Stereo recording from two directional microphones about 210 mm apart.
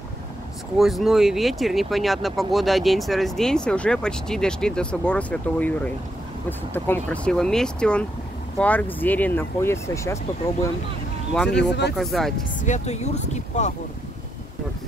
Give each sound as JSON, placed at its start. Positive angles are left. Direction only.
{"t": 0.7, "sound": "speech", "side_deg": 0}
{"t": 11.5, "sound": "speech", "side_deg": 55}
{"t": 12.0, "sound": "speech", "side_deg": 0}
{"t": 12.5, "sound": "speech", "side_deg": 35}